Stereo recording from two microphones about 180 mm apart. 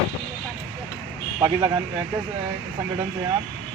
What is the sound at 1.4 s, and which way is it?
Speech, 20° right (ahead or behind).